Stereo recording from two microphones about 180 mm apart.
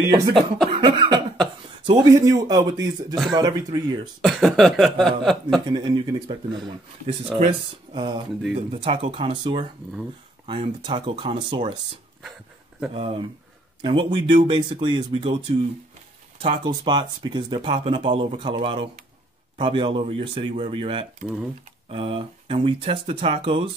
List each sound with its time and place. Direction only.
0.0 s speech: 25° right (ahead or behind)
4.2 s speech: centre (ahead or behind)
5.7 s speech: 20° right (ahead or behind)
7.9 s speech: 25° right (ahead or behind)
12.9 s speech: 35° right (ahead or behind)
16.3 s speech: 25° right (ahead or behind)